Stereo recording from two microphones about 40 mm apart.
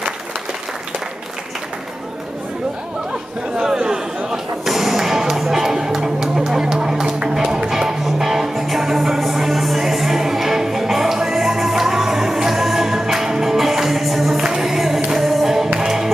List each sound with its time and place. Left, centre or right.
3.6 s chatter: centre
4.3 s music: centre
14.4 s singing: centre
15.0 s music: centre